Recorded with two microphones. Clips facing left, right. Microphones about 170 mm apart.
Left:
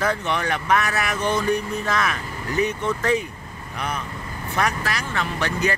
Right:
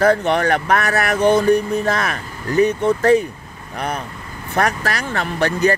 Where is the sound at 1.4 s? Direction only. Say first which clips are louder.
Right 7 dB; 35° right (ahead or behind).